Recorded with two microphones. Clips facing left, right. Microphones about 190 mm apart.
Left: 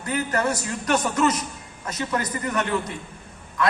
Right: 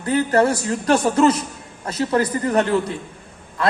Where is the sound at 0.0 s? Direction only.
30° right (ahead or behind).